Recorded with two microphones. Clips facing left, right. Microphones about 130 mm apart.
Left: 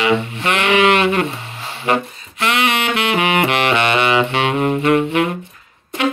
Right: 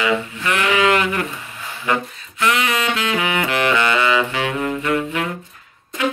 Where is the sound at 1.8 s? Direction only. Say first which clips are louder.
Left 3 dB; 20° left (ahead or behind).